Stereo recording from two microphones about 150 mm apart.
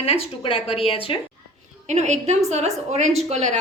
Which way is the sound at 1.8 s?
50° right (ahead or behind).